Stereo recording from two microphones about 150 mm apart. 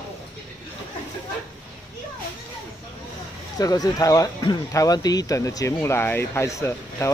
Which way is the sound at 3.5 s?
25° left (ahead or behind).